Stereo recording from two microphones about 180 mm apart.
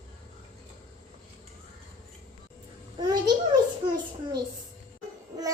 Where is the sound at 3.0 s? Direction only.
25° right (ahead or behind).